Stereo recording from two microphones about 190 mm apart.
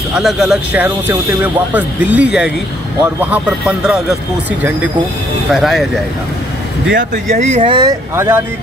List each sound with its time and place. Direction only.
0.1 s speech: centre (ahead or behind)
5.5 s speech: centre (ahead or behind)
7.3 s speech: 35° right (ahead or behind)
7.7 s speech: 15° right (ahead or behind)